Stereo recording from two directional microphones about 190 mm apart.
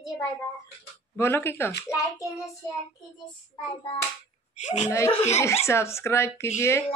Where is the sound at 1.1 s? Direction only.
10° left (ahead or behind).